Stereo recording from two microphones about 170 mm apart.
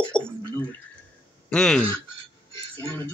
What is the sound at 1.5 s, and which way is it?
Speech, 5° left (ahead or behind).